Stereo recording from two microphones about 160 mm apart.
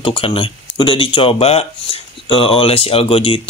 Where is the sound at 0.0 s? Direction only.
35° left (ahead or behind).